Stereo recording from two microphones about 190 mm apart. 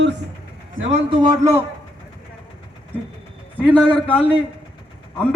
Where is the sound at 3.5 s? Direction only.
10° left (ahead or behind).